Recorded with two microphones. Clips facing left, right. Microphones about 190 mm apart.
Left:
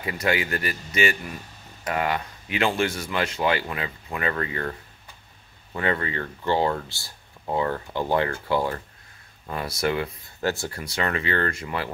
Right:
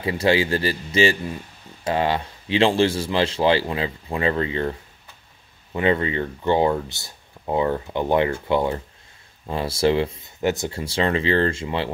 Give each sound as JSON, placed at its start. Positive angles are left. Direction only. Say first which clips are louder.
{"t": 0.0, "sound": "speech", "louder": "right 6 dB", "side_deg": -30}